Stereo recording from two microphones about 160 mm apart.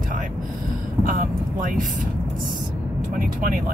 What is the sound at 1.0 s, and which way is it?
Speech, 60° right (ahead or behind).